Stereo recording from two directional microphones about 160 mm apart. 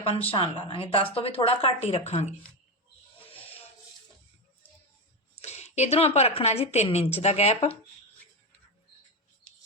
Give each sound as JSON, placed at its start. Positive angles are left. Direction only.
{"t": 0.0, "sound": "a woman's voice", "side_deg": 40}
{"t": 5.4, "sound": "a woman's voice", "side_deg": 45}